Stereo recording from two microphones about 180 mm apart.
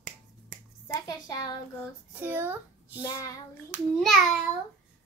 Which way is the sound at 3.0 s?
20° left (ahead or behind).